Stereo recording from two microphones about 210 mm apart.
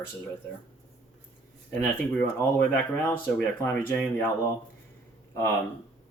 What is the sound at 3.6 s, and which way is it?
Speech, 10° left (ahead or behind).